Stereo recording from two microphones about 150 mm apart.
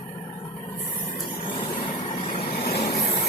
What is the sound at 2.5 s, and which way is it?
Vehicle, 85° left.